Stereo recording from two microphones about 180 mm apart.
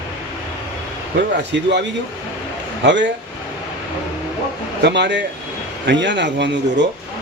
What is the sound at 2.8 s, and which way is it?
Speech, 80° right.